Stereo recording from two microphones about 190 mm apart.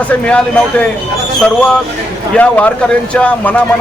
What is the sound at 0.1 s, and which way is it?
Speech, 5° left (ahead or behind).